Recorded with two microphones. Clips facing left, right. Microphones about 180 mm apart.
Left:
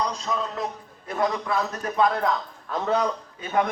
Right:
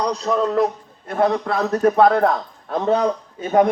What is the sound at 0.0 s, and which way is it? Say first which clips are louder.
A man's voice: right 8 dB; 60° right (ahead or behind).